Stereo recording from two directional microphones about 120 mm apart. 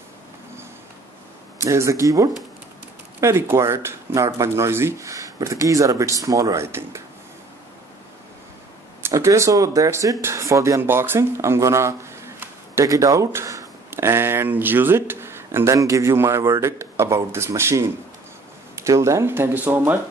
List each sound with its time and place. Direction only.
1.6 s speech: 25° right (ahead or behind)
9.1 s speech: 25° right (ahead or behind)